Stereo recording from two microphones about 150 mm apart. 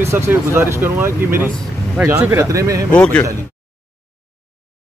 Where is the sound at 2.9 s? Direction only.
10° left (ahead or behind).